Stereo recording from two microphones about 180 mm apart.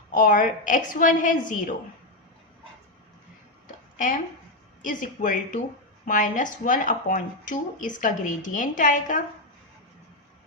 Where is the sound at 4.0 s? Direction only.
45° left (ahead or behind).